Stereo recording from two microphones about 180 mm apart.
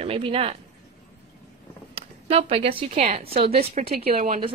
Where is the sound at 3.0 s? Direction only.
45° right (ahead or behind).